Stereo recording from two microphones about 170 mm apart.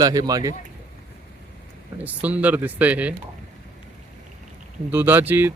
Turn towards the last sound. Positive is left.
turn(degrees=-10)  # may be behind; listen again after turning